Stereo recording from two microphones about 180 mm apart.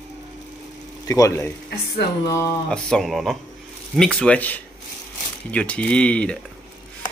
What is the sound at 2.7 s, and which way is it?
Speech, centre (ahead or behind).